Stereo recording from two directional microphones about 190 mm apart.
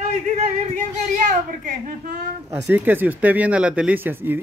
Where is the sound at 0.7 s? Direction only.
45° right (ahead or behind).